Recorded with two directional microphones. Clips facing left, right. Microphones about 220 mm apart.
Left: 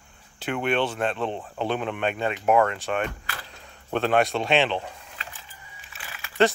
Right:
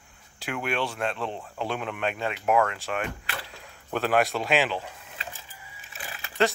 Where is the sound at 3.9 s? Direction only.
25° left (ahead or behind).